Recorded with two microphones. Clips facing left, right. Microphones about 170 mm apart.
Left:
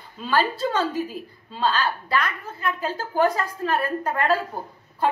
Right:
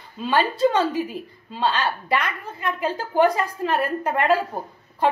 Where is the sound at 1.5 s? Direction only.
20° right (ahead or behind).